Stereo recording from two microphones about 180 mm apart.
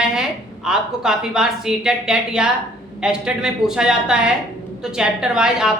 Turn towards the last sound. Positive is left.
turn(degrees=-5)  # may be behind; listen again after turning